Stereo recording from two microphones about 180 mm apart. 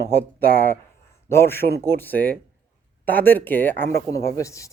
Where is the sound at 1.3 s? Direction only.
15° left (ahead or behind).